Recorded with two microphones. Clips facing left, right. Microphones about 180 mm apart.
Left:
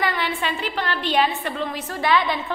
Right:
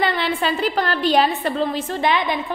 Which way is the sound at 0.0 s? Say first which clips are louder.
Right 4 dB; 30° right (ahead or behind).